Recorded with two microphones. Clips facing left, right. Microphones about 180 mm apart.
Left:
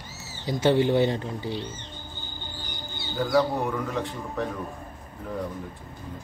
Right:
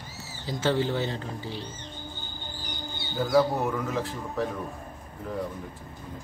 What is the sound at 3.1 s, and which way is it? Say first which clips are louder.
Speech: even; 5° right (ahead or behind).